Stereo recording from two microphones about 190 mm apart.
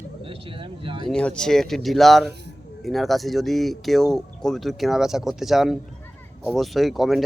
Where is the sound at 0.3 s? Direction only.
25° right (ahead or behind).